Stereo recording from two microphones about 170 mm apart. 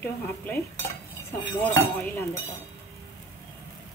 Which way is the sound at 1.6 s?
10° left (ahead or behind).